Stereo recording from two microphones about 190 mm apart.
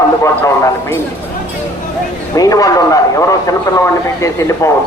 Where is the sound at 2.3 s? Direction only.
20° left (ahead or behind).